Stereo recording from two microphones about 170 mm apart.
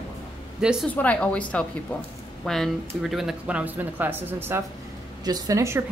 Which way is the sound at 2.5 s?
Centre (ahead or behind).